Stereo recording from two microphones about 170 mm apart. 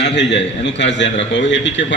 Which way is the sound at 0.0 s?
90° left.